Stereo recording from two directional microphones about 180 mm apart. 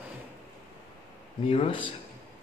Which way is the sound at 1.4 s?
30° left (ahead or behind).